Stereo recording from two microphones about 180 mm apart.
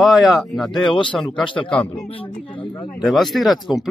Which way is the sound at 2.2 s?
25° left (ahead or behind).